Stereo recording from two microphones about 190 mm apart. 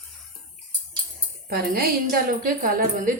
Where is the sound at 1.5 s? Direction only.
50° right (ahead or behind).